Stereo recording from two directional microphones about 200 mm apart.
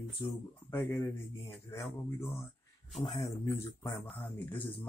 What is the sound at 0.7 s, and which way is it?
Speech, 10° left (ahead or behind).